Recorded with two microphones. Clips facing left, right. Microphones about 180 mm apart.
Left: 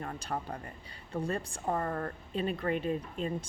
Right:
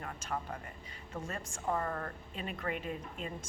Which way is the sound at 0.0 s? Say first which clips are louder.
Left 3 dB; 35° left (ahead or behind).